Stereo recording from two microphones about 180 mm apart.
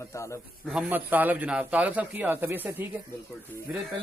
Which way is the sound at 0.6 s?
5° right (ahead or behind).